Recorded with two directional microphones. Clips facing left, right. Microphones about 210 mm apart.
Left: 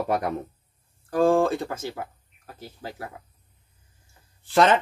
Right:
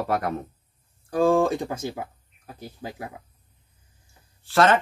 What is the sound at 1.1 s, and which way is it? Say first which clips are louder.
A man's voice: even; 15° right (ahead or behind).